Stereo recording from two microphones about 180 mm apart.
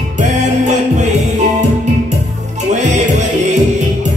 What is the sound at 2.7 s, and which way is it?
Music, 40° right (ahead or behind).